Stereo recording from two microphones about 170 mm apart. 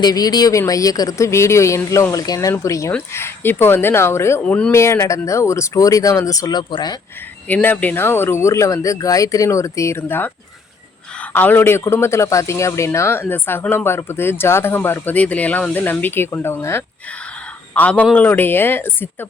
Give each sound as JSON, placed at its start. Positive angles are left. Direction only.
{"t": 0.0, "sound": "speech", "side_deg": 20}
{"t": 7.4, "sound": "speech", "side_deg": 10}
{"t": 11.3, "sound": "speech", "side_deg": 10}